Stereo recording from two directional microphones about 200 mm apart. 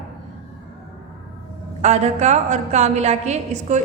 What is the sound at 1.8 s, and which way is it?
A woman's voice, 35° right (ahead or behind).